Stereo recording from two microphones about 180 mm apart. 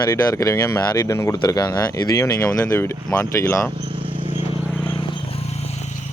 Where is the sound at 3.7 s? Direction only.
30° right (ahead or behind).